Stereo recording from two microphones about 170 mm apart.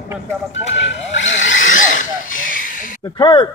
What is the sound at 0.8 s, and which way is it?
Vehicle, 90° left.